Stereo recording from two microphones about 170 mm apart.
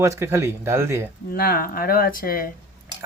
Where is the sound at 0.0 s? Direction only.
15° right (ahead or behind).